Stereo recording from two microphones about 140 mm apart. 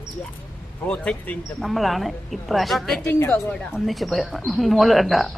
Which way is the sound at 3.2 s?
10° left (ahead or behind).